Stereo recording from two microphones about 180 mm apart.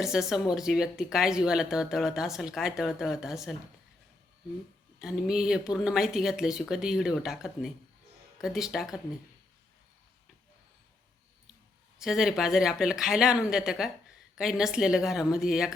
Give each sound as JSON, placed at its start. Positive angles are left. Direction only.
{"t": 0.0, "sound": "speech", "side_deg": -5}
{"t": 4.9, "sound": "speech", "side_deg": 0}
{"t": 11.9, "sound": "speech", "side_deg": 0}